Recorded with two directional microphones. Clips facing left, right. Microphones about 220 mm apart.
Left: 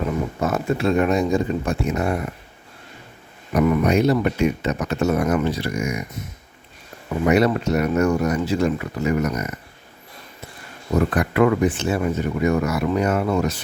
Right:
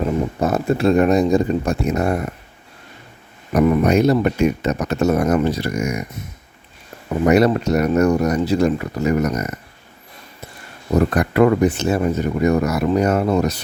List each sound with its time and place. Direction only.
0.0 s speech: 35° right (ahead or behind)
3.5 s speech: 35° right (ahead or behind)
7.1 s speech: 40° right (ahead or behind)
10.9 s speech: 40° right (ahead or behind)